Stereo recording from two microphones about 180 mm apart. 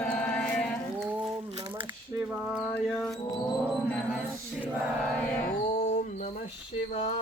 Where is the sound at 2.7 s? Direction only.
Centre (ahead or behind).